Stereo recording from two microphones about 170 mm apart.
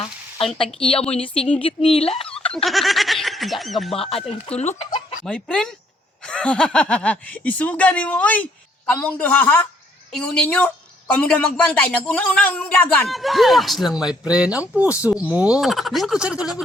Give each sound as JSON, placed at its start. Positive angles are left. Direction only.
{"t": 0.0, "sound": "speech", "side_deg": 35}
{"t": 2.0, "sound": "a sound", "side_deg": 35}
{"t": 2.5, "sound": "speech", "side_deg": 0}
{"t": 3.9, "sound": "speech", "side_deg": 35}
{"t": 5.2, "sound": "speech", "side_deg": 5}
{"t": 11.1, "sound": "speech", "side_deg": 5}